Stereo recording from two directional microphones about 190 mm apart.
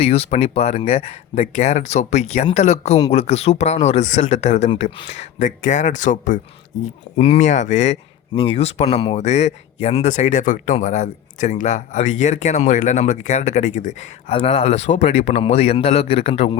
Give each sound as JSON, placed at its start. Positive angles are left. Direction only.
{"t": 0.0, "sound": "speech", "side_deg": 30}